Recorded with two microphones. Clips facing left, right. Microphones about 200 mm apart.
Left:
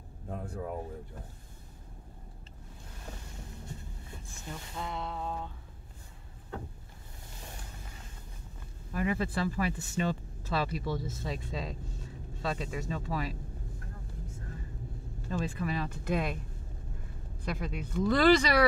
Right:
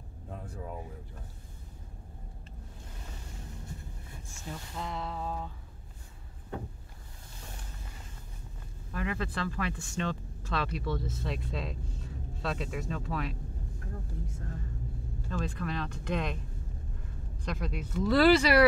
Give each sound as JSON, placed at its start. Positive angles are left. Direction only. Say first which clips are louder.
{"t": 4.5, "sound": "speech", "louder": "right 1 dB", "side_deg": 0}
{"t": 8.9, "sound": "speech", "louder": "left 3 dB", "side_deg": 10}
{"t": 15.2, "sound": "speech", "louder": "left 2 dB", "side_deg": 5}
{"t": 17.5, "sound": "speech", "louder": "even", "side_deg": 0}